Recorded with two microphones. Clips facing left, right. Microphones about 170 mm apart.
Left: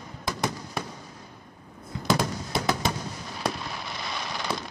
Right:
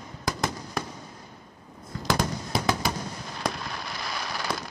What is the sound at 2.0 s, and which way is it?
Fireworks, centre (ahead or behind).